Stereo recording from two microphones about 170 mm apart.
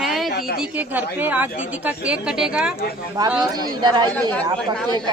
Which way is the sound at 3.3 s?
25° right (ahead or behind).